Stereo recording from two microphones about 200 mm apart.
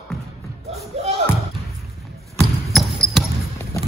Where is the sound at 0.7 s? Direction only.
30° right (ahead or behind).